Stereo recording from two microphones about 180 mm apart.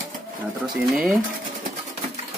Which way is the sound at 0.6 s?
Centre (ahead or behind).